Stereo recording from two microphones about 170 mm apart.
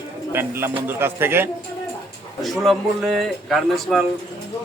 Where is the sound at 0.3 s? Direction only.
15° right (ahead or behind).